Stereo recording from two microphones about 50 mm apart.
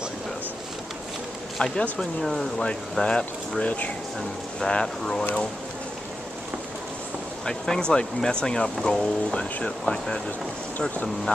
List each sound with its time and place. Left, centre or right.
1.6 s speech: centre
7.4 s speech: centre